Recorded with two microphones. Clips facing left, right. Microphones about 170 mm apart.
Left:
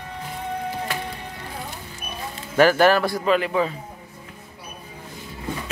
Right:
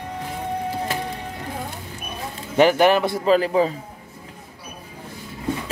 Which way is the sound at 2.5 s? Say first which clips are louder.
Right 1 dB; 20° right (ahead or behind).